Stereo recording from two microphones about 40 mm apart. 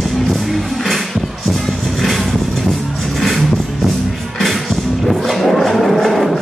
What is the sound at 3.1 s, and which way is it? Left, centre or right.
Music, centre.